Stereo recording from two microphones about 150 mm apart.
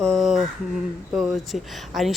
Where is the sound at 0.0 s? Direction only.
Centre (ahead or behind).